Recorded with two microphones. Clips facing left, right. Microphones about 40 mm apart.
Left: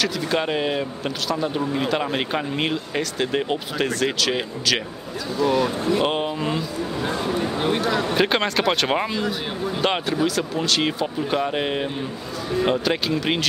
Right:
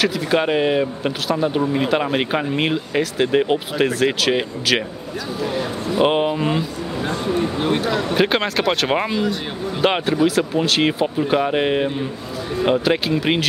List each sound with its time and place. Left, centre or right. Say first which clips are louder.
0.0 s speech: right 4 dB; centre